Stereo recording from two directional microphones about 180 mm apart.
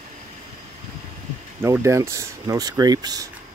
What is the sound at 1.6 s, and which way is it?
Speech, 15° right (ahead or behind).